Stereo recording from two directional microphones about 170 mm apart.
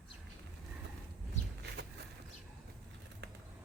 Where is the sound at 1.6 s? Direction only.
75° right (ahead or behind).